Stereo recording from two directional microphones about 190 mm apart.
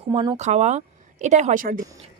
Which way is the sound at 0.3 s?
35° right (ahead or behind).